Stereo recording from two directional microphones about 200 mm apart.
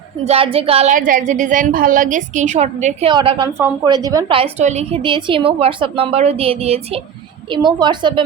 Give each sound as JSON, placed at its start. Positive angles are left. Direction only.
{"t": 0.3, "sound": "a woman's voice", "side_deg": -30}
{"t": 3.1, "sound": "a woman's voice", "side_deg": -25}